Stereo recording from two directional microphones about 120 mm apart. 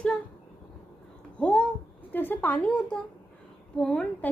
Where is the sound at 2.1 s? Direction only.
15° left (ahead or behind).